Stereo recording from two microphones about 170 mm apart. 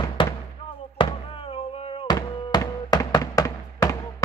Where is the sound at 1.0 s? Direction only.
30° left (ahead or behind).